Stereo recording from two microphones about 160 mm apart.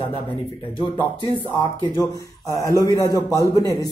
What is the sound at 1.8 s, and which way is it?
A man's voice, 25° left (ahead or behind).